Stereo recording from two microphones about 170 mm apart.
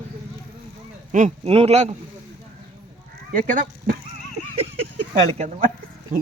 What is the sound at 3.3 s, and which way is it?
Speech, 50° right (ahead or behind).